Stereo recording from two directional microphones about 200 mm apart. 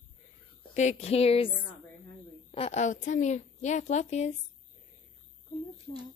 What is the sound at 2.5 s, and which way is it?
A woman's voice, 35° left (ahead or behind).